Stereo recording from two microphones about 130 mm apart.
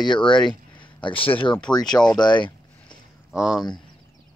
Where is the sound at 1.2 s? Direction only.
45° left (ahead or behind).